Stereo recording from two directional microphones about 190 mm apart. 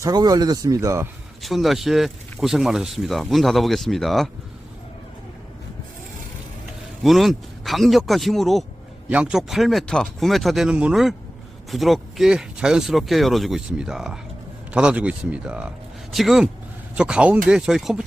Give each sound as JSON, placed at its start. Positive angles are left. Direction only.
{"t": 0.0, "sound": "speech", "side_deg": -20}
{"t": 1.4, "sound": "speech", "side_deg": 0}
{"t": 7.0, "sound": "a man's voice", "side_deg": 0}